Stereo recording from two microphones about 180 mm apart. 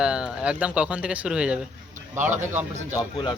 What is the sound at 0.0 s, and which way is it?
Speech, 5° right (ahead or behind).